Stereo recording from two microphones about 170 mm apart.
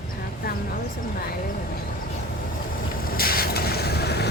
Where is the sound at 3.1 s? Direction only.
60° left (ahead or behind).